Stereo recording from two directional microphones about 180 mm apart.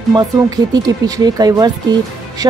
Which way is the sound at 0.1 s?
20° right (ahead or behind).